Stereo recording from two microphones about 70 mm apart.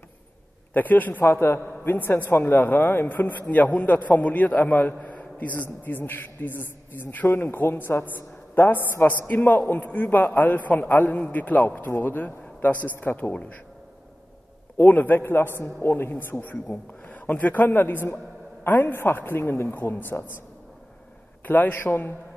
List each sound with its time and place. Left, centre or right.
0.7 s a man's voice: left
1.2 s a man's voice: left
14.8 s a man's voice: left
21.5 s a man's voice: left